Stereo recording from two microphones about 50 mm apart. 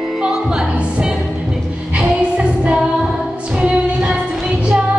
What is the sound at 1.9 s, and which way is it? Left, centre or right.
Music, right.